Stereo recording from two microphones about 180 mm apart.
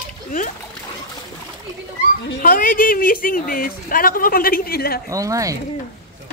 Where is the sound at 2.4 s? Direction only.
50° left (ahead or behind).